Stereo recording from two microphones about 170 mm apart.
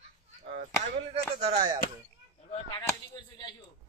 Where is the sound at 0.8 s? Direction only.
40° right (ahead or behind).